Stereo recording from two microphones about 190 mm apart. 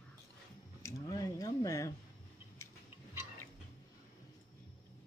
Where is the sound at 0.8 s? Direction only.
15° left (ahead or behind).